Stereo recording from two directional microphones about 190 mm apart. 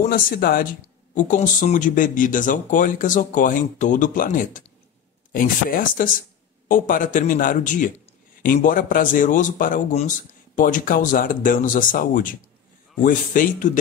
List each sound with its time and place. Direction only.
0.0 s a man's voice: 50° left (ahead or behind)